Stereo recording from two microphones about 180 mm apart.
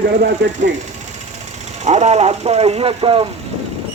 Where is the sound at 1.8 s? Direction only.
40° right (ahead or behind).